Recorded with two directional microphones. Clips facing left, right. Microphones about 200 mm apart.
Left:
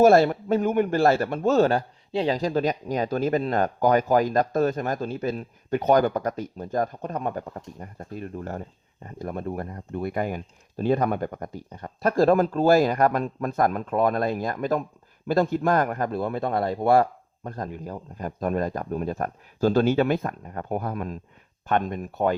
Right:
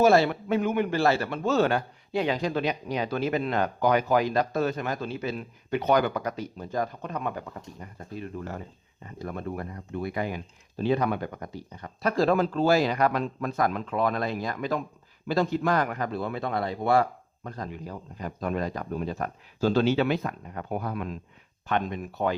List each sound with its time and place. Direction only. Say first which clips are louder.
0.0 s speech: left 4 dB; 50° left (ahead or behind)